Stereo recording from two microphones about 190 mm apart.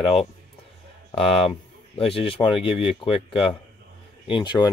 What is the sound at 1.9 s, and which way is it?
Speech, 30° left (ahead or behind).